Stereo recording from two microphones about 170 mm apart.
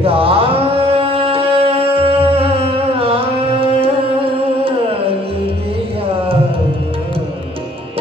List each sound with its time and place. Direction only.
0.0 s mantra: 35° right (ahead or behind)